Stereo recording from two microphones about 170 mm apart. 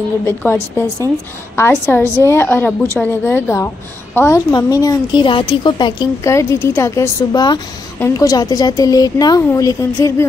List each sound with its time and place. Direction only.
0.3 s a woman's voice: 10° left (ahead or behind)